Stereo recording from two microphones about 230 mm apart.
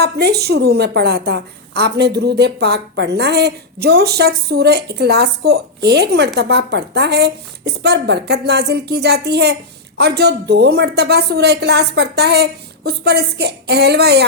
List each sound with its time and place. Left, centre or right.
0.0 s a woman's voice: right